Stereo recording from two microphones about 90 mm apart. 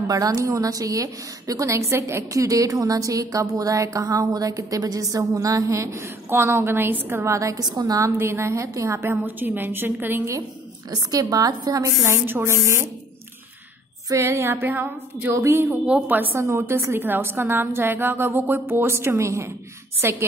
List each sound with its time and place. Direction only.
0.0 s a woman's voice: 40° right (ahead or behind)
7.6 s a woman's voice: 50° right (ahead or behind)
8.0 s a woman's voice: 30° right (ahead or behind)
10.9 s a woman's voice: 45° right (ahead or behind)
12.0 s a woman's voice: 25° right (ahead or behind)
14.0 s a woman's voice: 35° right (ahead or behind)
16.3 s a woman's voice: 30° right (ahead or behind)